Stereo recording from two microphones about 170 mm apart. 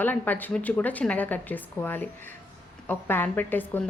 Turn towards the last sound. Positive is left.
turn(degrees=10)  # may be behind; listen again after turning